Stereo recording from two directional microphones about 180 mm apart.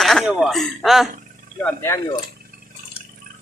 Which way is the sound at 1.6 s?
15° left (ahead or behind).